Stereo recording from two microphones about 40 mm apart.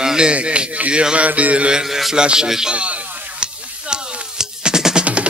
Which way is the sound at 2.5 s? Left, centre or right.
Centre.